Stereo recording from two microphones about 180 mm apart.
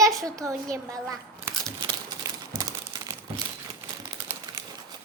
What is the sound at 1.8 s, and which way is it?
Crumpling, 25° right (ahead or behind).